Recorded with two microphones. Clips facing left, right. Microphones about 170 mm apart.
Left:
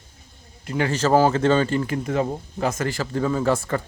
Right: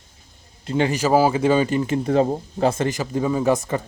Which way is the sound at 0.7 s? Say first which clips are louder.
Right 3 dB; 25° right (ahead or behind).